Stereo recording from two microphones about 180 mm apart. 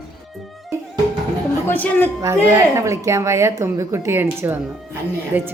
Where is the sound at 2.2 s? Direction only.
15° right (ahead or behind).